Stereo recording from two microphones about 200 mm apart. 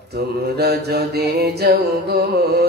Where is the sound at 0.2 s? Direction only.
55° right (ahead or behind).